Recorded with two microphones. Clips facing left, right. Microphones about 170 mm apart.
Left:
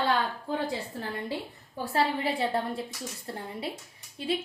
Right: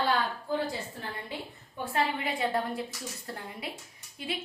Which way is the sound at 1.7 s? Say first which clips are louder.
Left 3 dB; 35° left (ahead or behind).